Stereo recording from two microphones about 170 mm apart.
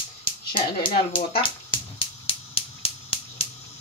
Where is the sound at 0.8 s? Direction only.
30° left (ahead or behind).